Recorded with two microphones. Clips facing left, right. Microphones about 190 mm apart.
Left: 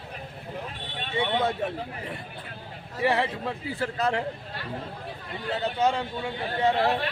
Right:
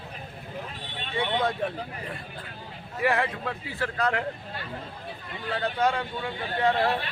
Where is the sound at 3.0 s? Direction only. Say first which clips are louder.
Left 1 dB; 30° left (ahead or behind).